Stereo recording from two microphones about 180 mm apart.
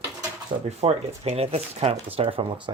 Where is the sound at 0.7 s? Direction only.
35° right (ahead or behind).